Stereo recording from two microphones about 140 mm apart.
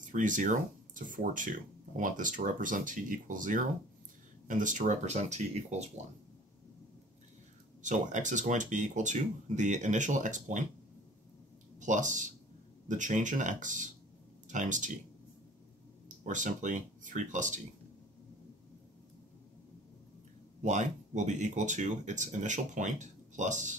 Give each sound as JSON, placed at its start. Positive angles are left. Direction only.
{"t": 0.0, "sound": "speech", "side_deg": -65}
{"t": 7.8, "sound": "speech", "side_deg": -60}
{"t": 11.8, "sound": "speech", "side_deg": -60}
{"t": 16.3, "sound": "speech", "side_deg": -65}
{"t": 20.6, "sound": "speech", "side_deg": -60}